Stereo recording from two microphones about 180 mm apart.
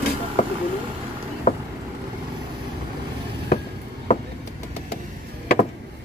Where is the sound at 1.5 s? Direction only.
40° left (ahead or behind).